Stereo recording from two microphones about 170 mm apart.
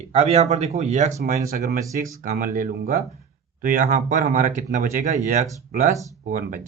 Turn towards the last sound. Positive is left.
turn(degrees=-50)  # may be behind; listen again after turning